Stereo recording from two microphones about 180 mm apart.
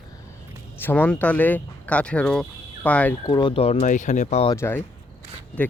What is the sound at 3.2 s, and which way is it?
Speech, 25° left (ahead or behind).